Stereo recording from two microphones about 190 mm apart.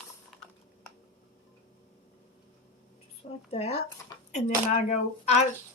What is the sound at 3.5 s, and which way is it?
Speech, 35° left (ahead or behind).